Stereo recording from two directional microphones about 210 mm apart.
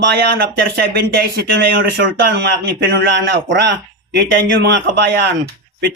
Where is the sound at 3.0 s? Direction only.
55° right (ahead or behind).